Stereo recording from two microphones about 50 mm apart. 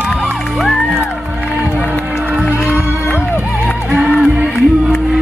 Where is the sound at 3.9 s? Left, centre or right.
Right.